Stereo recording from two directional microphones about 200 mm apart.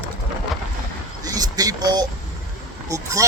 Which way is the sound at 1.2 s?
20° right (ahead or behind).